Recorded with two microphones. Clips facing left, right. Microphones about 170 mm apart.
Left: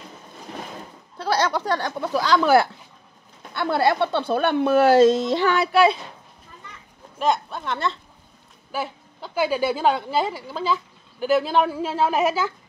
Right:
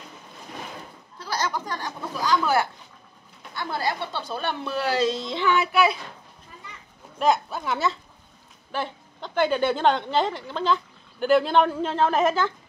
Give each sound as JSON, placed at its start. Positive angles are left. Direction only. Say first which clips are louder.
{"t": 1.1, "sound": "speech", "louder": "left 6 dB", "side_deg": 65}
{"t": 3.5, "sound": "speech", "louder": "left 8 dB", "side_deg": 65}
{"t": 7.2, "sound": "a woman's voice", "louder": "even", "side_deg": 0}